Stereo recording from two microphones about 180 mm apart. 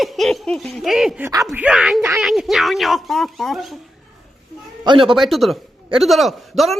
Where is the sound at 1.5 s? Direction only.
5° right (ahead or behind).